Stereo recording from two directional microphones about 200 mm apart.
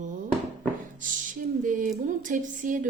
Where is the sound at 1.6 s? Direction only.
40° right (ahead or behind).